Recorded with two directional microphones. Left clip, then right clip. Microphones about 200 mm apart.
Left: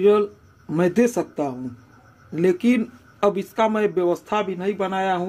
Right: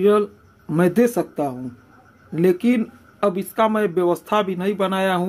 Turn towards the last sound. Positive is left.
turn(degrees=-15)  # may be behind; listen again after turning